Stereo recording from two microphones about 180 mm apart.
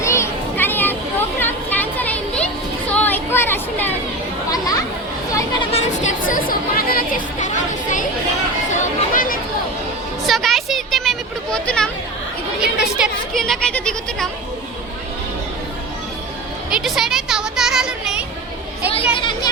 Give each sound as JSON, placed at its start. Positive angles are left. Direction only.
{"t": 0.0, "sound": "children playing", "side_deg": 15}
{"t": 1.4, "sound": "music", "side_deg": 10}
{"t": 2.9, "sound": "a sound", "side_deg": 10}
{"t": 4.5, "sound": "chatter", "side_deg": 20}
{"t": 5.7, "sound": "chatter", "side_deg": 40}
{"t": 10.2, "sound": "a sound", "side_deg": 0}
{"t": 13.0, "sound": "speech", "side_deg": 0}
{"t": 16.7, "sound": "a sound", "side_deg": 0}
{"t": 19.1, "sound": "children playing", "side_deg": 25}